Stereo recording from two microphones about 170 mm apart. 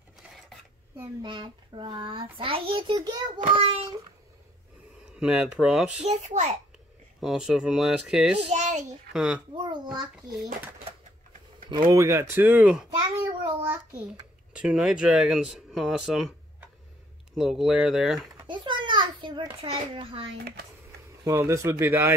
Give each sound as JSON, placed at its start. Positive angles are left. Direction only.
{"t": 1.2, "sound": "a child's voice", "side_deg": -30}
{"t": 5.1, "sound": "speech", "side_deg": -5}
{"t": 6.0, "sound": "a child's voice", "side_deg": -45}
{"t": 7.2, "sound": "speech", "side_deg": -5}
{"t": 8.5, "sound": "a child's voice", "side_deg": -45}
{"t": 9.1, "sound": "speech", "side_deg": -5}
{"t": 9.7, "sound": "a child's voice", "side_deg": -25}
{"t": 11.9, "sound": "speech", "side_deg": -15}
{"t": 17.4, "sound": "speech", "side_deg": 0}
{"t": 18.5, "sound": "a child's voice", "side_deg": -30}
{"t": 21.2, "sound": "speech", "side_deg": -15}